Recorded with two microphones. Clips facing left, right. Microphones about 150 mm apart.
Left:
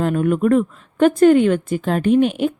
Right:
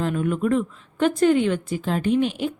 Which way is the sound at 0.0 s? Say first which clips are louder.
Left 6 dB; 55° left (ahead or behind).